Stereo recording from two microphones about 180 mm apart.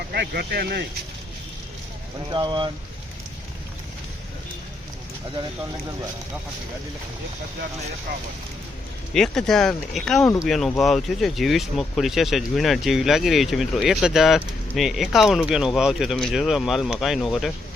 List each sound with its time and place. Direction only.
0.1 s speech: 60° right (ahead or behind)
2.3 s speech: 25° right (ahead or behind)
9.1 s speech: centre (ahead or behind)